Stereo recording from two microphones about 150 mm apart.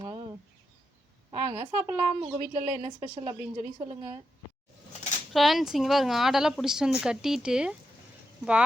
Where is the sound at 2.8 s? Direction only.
50° right (ahead or behind).